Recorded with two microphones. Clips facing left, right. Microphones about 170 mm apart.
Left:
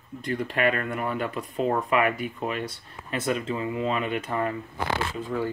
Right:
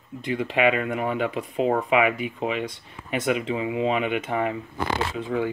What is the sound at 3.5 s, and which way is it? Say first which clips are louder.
Speech: right 3 dB; 15° right (ahead or behind).